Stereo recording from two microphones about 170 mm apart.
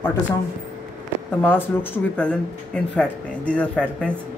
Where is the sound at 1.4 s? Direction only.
10° left (ahead or behind).